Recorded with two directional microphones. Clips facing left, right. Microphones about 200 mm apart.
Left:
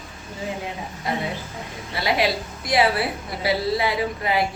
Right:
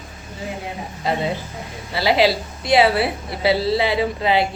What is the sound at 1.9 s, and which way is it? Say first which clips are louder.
A woman's voice: right 5 dB; 30° right (ahead or behind).